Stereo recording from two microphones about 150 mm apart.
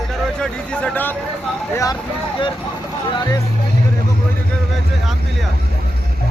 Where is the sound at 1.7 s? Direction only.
25° left (ahead or behind).